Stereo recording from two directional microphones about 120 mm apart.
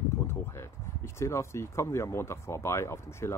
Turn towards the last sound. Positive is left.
turn(degrees=20)  # may be behind; listen again after turning